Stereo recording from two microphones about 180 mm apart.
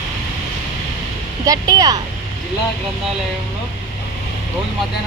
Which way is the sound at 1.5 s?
20° right (ahead or behind).